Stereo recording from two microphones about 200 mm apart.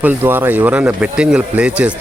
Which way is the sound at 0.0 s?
10° right (ahead or behind).